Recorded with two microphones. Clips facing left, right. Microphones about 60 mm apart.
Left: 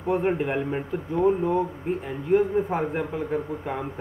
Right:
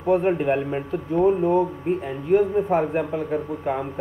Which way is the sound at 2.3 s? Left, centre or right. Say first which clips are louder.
Right 3 dB; centre.